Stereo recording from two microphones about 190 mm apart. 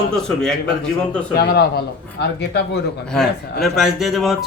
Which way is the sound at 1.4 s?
55° left (ahead or behind).